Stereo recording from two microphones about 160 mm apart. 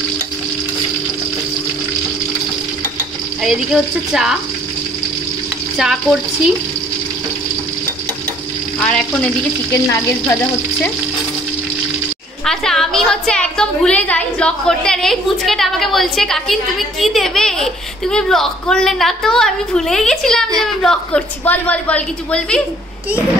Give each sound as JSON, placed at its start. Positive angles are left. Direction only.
{"t": 3.4, "sound": "a child's voice", "side_deg": -5}
{"t": 5.8, "sound": "a child's voice", "side_deg": 0}
{"t": 8.7, "sound": "frying", "side_deg": 5}
{"t": 9.7, "sound": "stir", "side_deg": 15}
{"t": 12.4, "sound": "a child's voice", "side_deg": 5}